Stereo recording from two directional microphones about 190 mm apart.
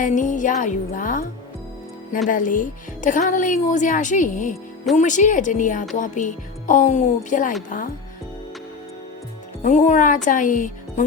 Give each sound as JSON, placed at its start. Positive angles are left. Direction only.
{"t": 0.0, "sound": "a woman's voice", "side_deg": 40}
{"t": 9.6, "sound": "speech", "side_deg": 40}